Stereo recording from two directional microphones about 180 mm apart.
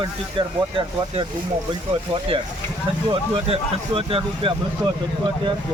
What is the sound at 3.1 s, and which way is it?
Speech, 30° right (ahead or behind).